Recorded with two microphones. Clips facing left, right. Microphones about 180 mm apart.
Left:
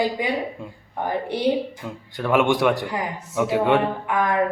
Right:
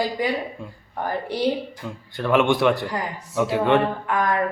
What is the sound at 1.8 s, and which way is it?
A man's voice, 10° left (ahead or behind).